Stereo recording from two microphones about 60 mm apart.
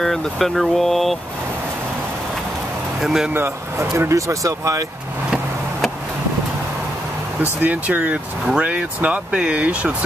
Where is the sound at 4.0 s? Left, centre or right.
Right.